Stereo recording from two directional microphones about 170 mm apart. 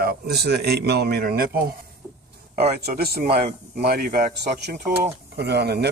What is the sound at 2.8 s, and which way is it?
Speech, 65° right (ahead or behind).